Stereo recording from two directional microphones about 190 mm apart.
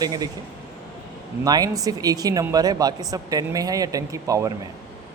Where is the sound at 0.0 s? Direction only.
20° right (ahead or behind).